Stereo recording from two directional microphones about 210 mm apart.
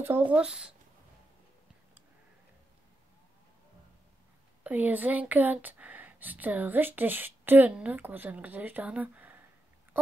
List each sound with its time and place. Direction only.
0.3 s speech: 5° right (ahead or behind)
4.6 s speech: 10° right (ahead or behind)